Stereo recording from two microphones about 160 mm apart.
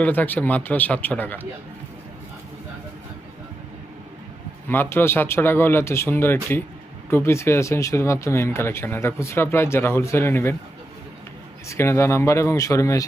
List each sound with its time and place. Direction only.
0.0 s speech: 10° left (ahead or behind)
4.7 s speech: 15° left (ahead or behind)
11.7 s speech: 15° left (ahead or behind)